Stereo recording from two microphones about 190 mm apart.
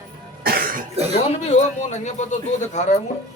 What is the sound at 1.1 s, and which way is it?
A man's voice, 40° left (ahead or behind).